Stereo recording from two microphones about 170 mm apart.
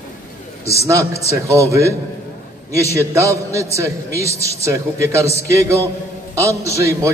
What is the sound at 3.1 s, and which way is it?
A man's voice, 15° right (ahead or behind).